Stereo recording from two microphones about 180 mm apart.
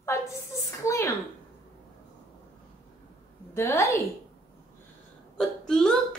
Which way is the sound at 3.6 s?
15° left (ahead or behind).